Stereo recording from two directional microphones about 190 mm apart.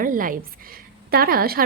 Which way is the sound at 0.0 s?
45° right (ahead or behind).